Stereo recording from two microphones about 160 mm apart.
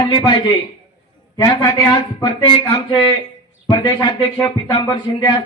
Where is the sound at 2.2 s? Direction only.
30° left (ahead or behind).